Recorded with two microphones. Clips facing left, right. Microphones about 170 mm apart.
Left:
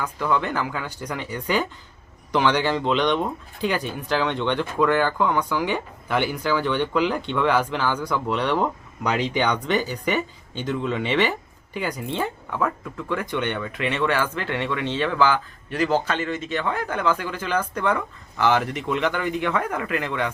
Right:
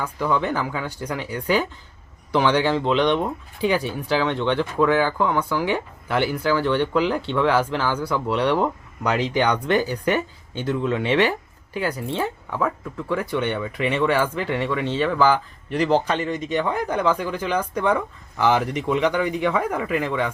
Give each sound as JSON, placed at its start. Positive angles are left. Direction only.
{"t": 0.0, "sound": "speech", "side_deg": -10}